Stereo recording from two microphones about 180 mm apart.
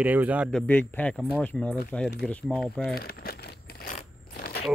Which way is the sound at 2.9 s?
60° left (ahead or behind).